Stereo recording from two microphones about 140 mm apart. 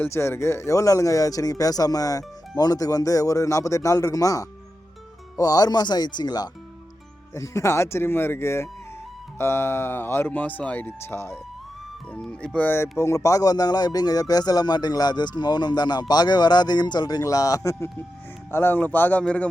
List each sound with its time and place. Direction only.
0.0 s speech: 20° left (ahead or behind)
12.1 s speech: 5° left (ahead or behind)